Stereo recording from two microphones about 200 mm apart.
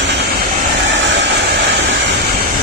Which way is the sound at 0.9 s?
60° right (ahead or behind).